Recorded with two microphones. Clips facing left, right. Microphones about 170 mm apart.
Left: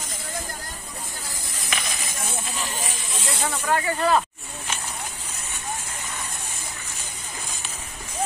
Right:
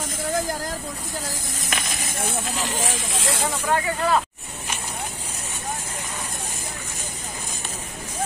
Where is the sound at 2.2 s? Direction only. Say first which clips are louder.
Right 5 dB; 75° right (ahead or behind); by 3.4 s 90° right.